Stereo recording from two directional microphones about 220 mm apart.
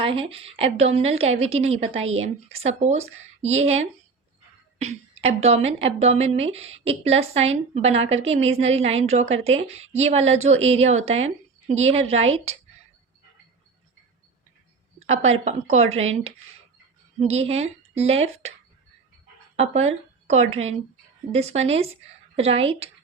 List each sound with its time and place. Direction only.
0.0 s speech: 25° right (ahead or behind)
15.0 s speech: 30° right (ahead or behind)
19.5 s speech: 30° right (ahead or behind)